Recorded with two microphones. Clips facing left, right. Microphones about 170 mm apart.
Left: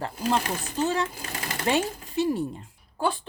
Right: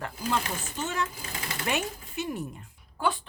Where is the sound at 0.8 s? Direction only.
35° left (ahead or behind).